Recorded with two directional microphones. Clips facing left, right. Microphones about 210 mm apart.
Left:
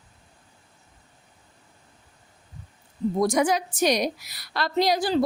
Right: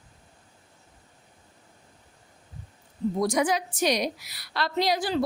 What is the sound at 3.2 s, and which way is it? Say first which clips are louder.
A woman's voice: left 3 dB; 50° left (ahead or behind).